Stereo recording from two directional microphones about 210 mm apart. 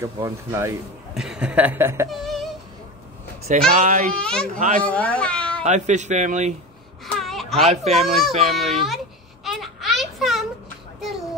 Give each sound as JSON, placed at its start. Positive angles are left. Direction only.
{"t": 0.0, "sound": "speech", "side_deg": -15}
{"t": 1.1, "sound": "speech", "side_deg": -5}
{"t": 2.0, "sound": "a sound", "side_deg": 0}
{"t": 3.4, "sound": "speech", "side_deg": -35}
{"t": 4.1, "sound": "speech", "side_deg": 5}
{"t": 4.6, "sound": "speech", "side_deg": -35}
{"t": 4.8, "sound": "speech", "side_deg": 5}
{"t": 5.6, "sound": "speech", "side_deg": -35}
{"t": 7.1, "sound": "a sound", "side_deg": 0}
{"t": 7.6, "sound": "speech", "side_deg": -30}
{"t": 8.4, "sound": "speech", "side_deg": 0}
{"t": 8.8, "sound": "a sound", "side_deg": 0}